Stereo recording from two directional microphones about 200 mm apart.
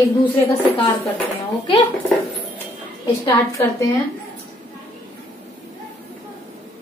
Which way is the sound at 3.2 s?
15° left (ahead or behind).